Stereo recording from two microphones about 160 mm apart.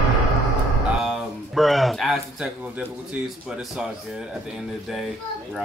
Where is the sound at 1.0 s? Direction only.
Centre (ahead or behind).